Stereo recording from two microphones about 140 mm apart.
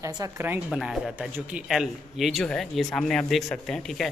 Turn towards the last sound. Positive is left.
turn(degrees=5)  # may be behind; listen again after turning